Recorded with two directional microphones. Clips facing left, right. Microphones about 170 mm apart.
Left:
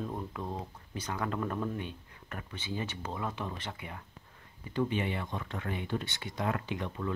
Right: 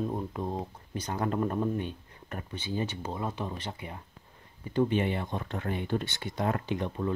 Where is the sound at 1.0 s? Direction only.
35° right (ahead or behind).